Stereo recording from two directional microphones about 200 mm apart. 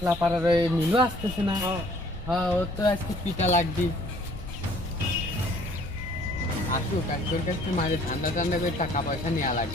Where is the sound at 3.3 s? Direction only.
35° left (ahead or behind).